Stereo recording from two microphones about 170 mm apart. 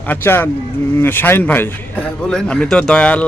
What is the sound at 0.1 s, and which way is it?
A man's voice, 15° left (ahead or behind).